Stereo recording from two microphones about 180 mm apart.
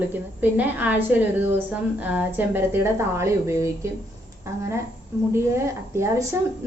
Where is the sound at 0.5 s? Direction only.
10° right (ahead or behind).